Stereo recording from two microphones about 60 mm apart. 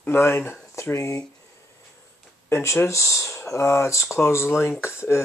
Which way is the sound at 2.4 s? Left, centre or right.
Left.